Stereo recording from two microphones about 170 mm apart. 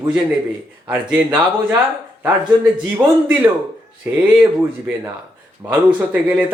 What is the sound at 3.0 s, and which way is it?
Speech, 15° right (ahead or behind).